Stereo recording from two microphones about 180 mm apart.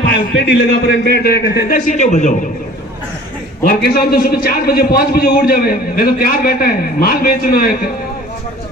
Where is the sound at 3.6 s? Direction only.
55° left (ahead or behind).